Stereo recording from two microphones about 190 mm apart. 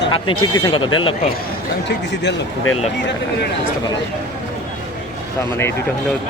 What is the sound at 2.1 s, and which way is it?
Speech, 80° left.